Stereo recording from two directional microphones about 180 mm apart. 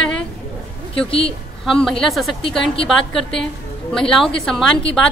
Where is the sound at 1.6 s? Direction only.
Centre (ahead or behind).